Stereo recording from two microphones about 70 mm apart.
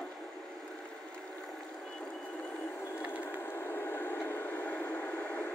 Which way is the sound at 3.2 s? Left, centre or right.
Left.